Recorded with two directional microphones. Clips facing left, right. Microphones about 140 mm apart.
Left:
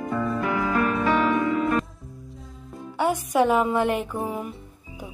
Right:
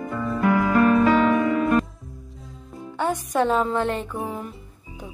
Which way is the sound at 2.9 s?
10° left (ahead or behind).